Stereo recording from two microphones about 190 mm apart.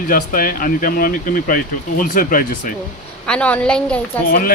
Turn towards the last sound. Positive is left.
turn(degrees=50)  # may be behind; listen again after turning